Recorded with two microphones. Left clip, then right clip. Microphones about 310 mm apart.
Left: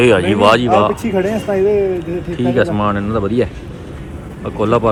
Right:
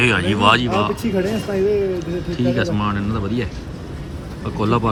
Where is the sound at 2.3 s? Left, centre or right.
Centre.